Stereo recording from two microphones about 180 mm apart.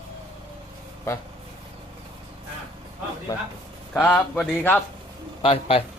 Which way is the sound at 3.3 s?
20° left (ahead or behind).